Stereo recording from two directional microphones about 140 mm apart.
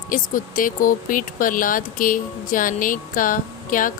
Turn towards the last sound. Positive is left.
turn(degrees=75)  # may be behind; listen again after turning